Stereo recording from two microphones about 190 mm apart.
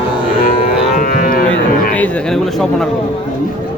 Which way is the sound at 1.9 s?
5° left (ahead or behind).